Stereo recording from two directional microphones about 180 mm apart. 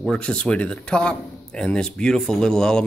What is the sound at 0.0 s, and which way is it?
A man's voice, 5° left (ahead or behind).